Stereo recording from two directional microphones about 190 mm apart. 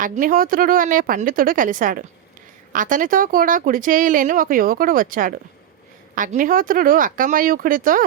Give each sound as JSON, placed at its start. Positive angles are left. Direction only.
{"t": 0.0, "sound": "speech", "side_deg": -45}